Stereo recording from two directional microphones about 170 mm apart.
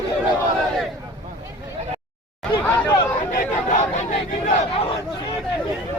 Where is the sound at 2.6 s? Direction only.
15° left (ahead or behind).